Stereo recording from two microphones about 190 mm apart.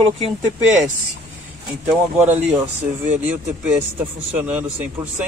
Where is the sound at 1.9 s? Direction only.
10° right (ahead or behind).